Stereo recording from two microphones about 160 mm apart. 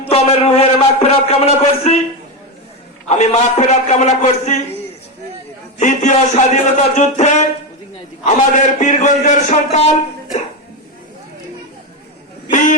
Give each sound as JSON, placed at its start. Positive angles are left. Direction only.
{"t": 0.0, "sound": "a sound", "side_deg": 40}
{"t": 3.1, "sound": "a man's voice", "side_deg": 45}
{"t": 5.8, "sound": "a man's voice", "side_deg": 50}